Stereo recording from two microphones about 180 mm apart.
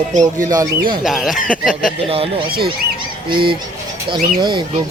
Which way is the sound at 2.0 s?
30° right (ahead or behind).